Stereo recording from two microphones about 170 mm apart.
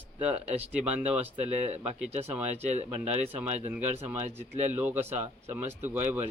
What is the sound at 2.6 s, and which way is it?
Speech, 40° right (ahead or behind).